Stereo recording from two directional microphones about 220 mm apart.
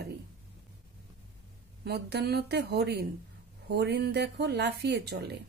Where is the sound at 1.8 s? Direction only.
50° right (ahead or behind).